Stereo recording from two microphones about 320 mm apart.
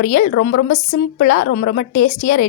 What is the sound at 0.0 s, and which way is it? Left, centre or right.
A woman's voice, left.